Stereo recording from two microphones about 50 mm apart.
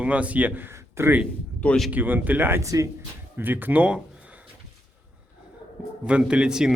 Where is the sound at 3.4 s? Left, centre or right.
Right.